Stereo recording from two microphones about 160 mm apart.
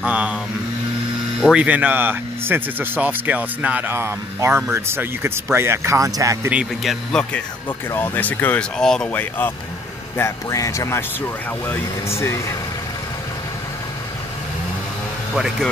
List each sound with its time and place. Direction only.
0.0 s mantra: 10° right (ahead or behind)
1.4 s speech: 5° right (ahead or behind)
6.5 s speech: 5° right (ahead or behind); by 12.5 s 15° left (ahead or behind)
15.3 s speech: 5° right (ahead or behind)